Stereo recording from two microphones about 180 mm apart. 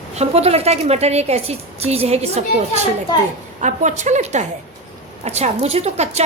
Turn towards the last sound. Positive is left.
turn(degrees=-35)  # may be behind; listen again after turning